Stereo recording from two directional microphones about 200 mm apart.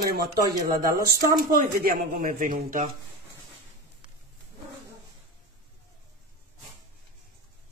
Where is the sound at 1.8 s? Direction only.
45° right (ahead or behind).